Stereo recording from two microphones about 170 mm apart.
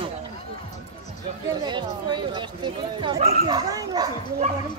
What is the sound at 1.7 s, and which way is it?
Speech, 25° right (ahead or behind).